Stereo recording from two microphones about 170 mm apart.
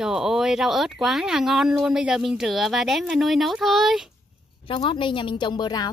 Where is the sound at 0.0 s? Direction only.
5° right (ahead or behind).